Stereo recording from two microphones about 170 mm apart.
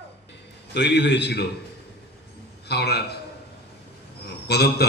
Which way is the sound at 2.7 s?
70° left (ahead or behind).